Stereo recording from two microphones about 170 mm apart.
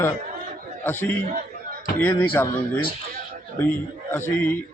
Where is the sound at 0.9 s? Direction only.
10° left (ahead or behind).